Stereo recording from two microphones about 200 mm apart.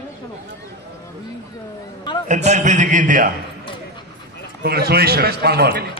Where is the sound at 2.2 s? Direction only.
35° right (ahead or behind).